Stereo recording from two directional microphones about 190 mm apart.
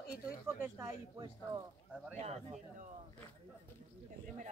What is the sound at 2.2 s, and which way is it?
Speech, 35° right (ahead or behind).